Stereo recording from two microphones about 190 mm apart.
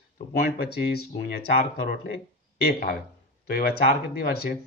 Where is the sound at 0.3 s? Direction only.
55° left (ahead or behind).